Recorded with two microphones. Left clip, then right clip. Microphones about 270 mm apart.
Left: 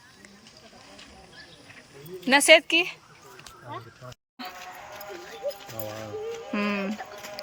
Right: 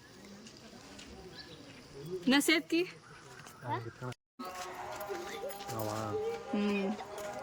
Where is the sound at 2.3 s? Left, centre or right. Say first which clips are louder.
Left 13 dB; centre.